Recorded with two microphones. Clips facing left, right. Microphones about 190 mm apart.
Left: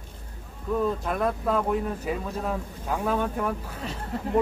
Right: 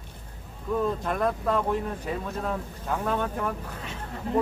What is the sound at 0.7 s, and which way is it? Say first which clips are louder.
Speech: left 1 dB; centre (ahead or behind).